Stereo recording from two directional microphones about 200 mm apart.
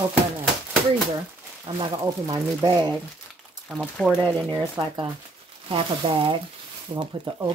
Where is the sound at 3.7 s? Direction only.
Centre (ahead or behind).